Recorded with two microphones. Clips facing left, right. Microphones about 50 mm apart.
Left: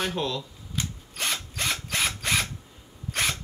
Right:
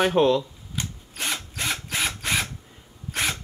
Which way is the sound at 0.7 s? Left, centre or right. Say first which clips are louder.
Even; centre.